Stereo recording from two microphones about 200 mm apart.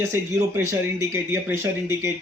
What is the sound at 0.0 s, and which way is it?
Speech, 15° right (ahead or behind).